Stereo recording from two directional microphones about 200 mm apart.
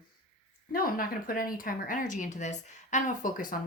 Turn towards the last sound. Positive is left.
turn(degrees=40)  # may be behind; listen again after turning